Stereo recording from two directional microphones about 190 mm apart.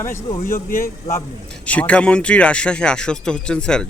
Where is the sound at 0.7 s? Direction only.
45° left (ahead or behind).